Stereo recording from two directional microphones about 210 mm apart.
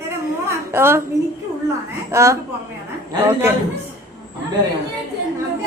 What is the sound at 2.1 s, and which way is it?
Speech, 15° right (ahead or behind).